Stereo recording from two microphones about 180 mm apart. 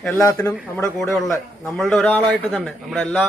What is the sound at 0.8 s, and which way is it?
A man's voice, centre (ahead or behind).